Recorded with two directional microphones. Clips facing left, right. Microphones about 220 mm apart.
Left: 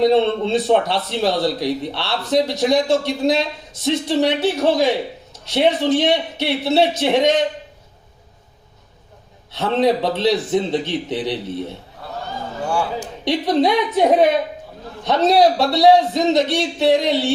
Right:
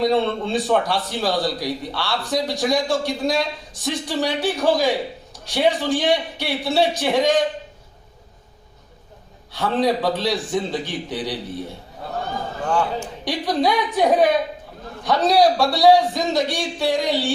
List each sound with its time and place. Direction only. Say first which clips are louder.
0.0 s a man's voice: left 4 dB; 20° left (ahead or behind)
9.5 s a man's voice: left 3 dB; 20° left (ahead or behind)
13.2 s a man's voice: left 4 dB; 25° left (ahead or behind)